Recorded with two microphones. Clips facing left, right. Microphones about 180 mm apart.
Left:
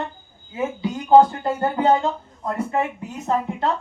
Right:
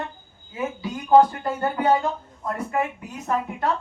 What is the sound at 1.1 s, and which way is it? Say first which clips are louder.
Speech: left 2 dB; 25° left (ahead or behind).